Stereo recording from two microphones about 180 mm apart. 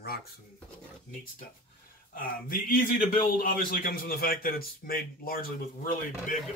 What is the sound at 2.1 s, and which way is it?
A man's voice, 50° left (ahead or behind).